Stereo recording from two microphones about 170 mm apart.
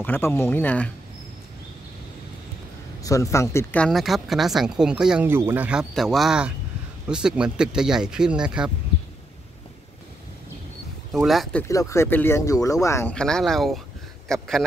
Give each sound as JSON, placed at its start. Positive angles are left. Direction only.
{"t": 0.0, "sound": "speech", "side_deg": 10}
{"t": 3.0, "sound": "speech", "side_deg": 20}
{"t": 11.1, "sound": "speech", "side_deg": 0}
{"t": 11.6, "sound": "speech", "side_deg": 20}
{"t": 13.1, "sound": "speech", "side_deg": 5}